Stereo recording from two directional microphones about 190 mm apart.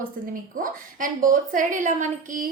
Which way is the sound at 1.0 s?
45° right (ahead or behind).